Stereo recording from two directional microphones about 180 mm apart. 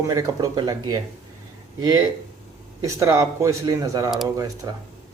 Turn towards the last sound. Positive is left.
turn(degrees=-20)  # may be behind; listen again after turning